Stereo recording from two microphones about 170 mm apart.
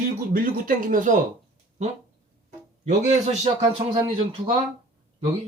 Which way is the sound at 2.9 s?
40° right (ahead or behind).